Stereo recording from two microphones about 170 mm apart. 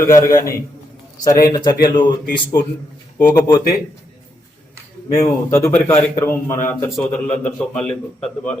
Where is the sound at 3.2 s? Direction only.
20° left (ahead or behind).